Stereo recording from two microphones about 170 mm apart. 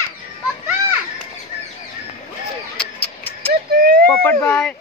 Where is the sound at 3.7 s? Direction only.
60° right (ahead or behind).